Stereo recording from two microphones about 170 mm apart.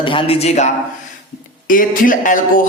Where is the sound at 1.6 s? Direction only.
55° left (ahead or behind).